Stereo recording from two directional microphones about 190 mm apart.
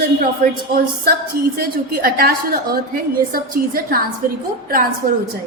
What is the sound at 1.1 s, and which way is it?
A woman's voice, 55° right (ahead or behind).